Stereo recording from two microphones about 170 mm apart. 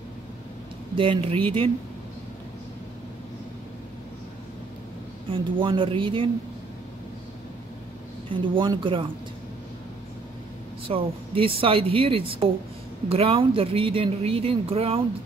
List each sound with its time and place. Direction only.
0.9 s speech: 30° right (ahead or behind)
5.3 s speech: 30° right (ahead or behind)
8.5 s speech: 30° right (ahead or behind)
10.9 s speech: 30° right (ahead or behind)